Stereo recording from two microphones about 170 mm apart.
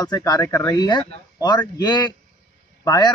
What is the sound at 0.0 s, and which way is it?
Speech, 25° left (ahead or behind).